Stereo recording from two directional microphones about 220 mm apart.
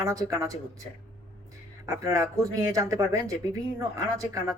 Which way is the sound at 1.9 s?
15° right (ahead or behind).